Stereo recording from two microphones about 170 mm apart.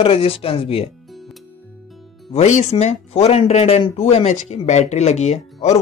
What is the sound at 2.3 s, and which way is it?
Speech, 40° left (ahead or behind).